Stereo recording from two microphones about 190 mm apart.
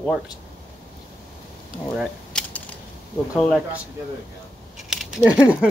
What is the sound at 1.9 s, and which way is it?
Keys jangling, centre (ahead or behind).